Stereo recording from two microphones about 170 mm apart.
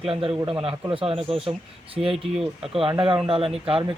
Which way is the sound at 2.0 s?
Centre (ahead or behind).